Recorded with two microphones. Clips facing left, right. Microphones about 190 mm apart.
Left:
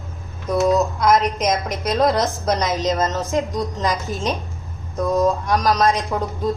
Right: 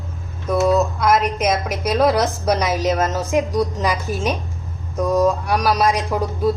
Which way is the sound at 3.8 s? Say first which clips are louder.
Right 1 dB; 10° right (ahead or behind).